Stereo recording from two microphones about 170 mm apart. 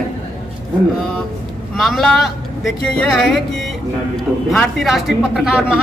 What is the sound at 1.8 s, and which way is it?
Speech, centre (ahead or behind).